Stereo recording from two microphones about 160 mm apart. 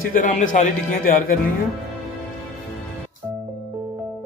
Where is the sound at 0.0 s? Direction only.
60° left (ahead or behind).